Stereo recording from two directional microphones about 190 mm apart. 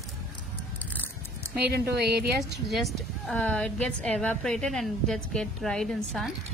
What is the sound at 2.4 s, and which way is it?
A woman's voice, centre (ahead or behind).